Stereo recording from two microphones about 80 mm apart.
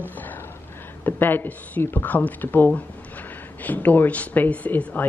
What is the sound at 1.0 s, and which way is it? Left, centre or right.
Speech, left.